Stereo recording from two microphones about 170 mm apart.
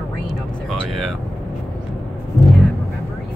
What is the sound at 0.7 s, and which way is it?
Vehicle, centre (ahead or behind).